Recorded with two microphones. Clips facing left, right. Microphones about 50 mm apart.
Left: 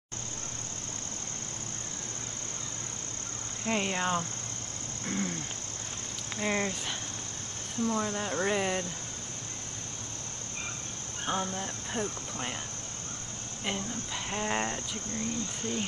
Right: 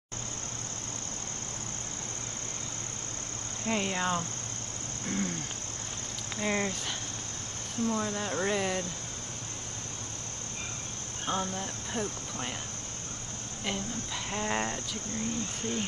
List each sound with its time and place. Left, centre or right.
3.6 s speech: centre
5.0 s a sound: centre
6.4 s speech: centre
7.8 s speech: centre
11.2 s speech: centre
13.7 s speech: centre